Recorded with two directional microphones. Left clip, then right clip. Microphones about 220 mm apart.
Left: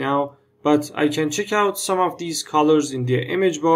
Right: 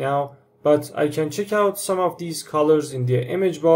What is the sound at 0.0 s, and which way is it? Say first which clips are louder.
Speech: left 1 dB; 15° left (ahead or behind).